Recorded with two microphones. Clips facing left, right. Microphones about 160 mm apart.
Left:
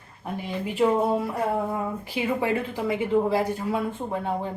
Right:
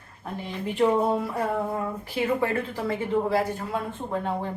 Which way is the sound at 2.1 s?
15° left (ahead or behind).